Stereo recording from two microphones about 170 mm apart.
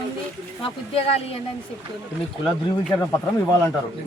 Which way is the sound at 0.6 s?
30° left (ahead or behind).